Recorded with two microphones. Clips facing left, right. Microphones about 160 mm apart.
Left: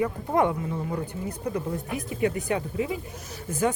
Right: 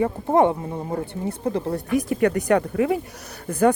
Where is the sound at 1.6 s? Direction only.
80° right; by 3.0 s 65° right (ahead or behind).